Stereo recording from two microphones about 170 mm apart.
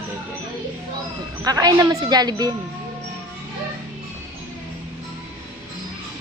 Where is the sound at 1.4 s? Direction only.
20° right (ahead or behind).